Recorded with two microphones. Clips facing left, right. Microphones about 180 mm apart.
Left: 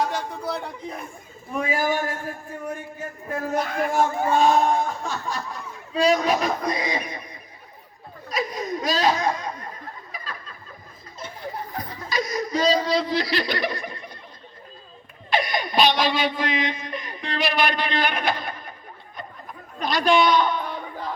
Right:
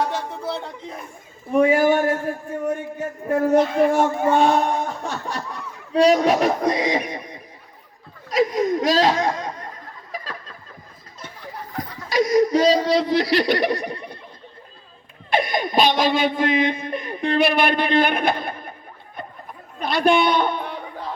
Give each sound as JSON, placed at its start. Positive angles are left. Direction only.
{"t": 0.0, "sound": "speech", "side_deg": -25}
{"t": 1.5, "sound": "a man's voice", "side_deg": -65}
{"t": 3.2, "sound": "a man's voice", "side_deg": -65}
{"t": 3.5, "sound": "speech", "side_deg": -25}
{"t": 3.9, "sound": "speech", "side_deg": -65}
{"t": 8.4, "sound": "speech", "side_deg": -90}
{"t": 12.0, "sound": "speech", "side_deg": -85}
{"t": 15.4, "sound": "speech", "side_deg": -50}
{"t": 19.8, "sound": "a man's voice", "side_deg": -55}